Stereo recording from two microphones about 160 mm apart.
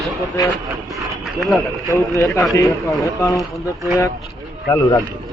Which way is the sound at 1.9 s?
20° left (ahead or behind).